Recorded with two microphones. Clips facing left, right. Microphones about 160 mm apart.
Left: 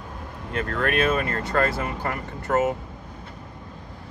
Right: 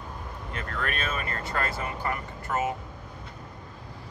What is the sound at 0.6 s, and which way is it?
Speech, 50° left (ahead or behind).